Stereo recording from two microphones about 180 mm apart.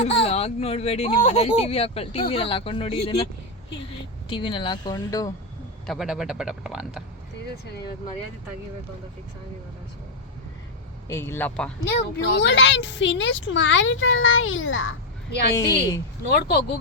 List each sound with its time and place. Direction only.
0.2 s speech: 35° left (ahead or behind)
4.3 s speech: 25° left (ahead or behind)
5.8 s speech: centre (ahead or behind)
11.1 s a man's voice: 15° left (ahead or behind)
11.9 s speech: 70° left (ahead or behind)